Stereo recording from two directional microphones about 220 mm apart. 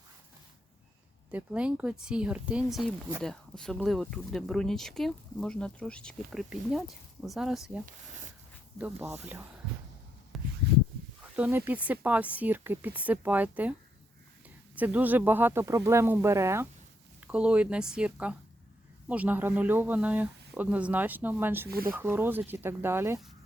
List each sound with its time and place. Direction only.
1.3 s speech: 5° right (ahead or behind)
8.8 s speech: 10° right (ahead or behind)
10.3 s a sound: centre (ahead or behind)
11.3 s speech: 5° right (ahead or behind)
14.8 s speech: 5° right (ahead or behind)
21.7 s speech: 45° right (ahead or behind)
21.9 s speech: 10° right (ahead or behind)